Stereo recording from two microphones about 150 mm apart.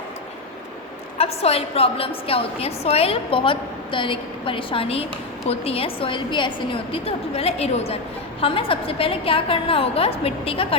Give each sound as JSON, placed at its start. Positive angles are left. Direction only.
{"t": 1.2, "sound": "a woman's voice", "side_deg": 40}